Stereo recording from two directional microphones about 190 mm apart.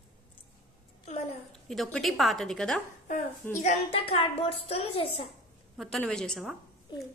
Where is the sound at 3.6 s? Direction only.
35° left (ahead or behind).